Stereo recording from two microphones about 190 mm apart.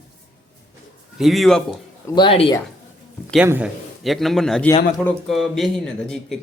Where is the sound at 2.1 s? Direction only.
25° left (ahead or behind).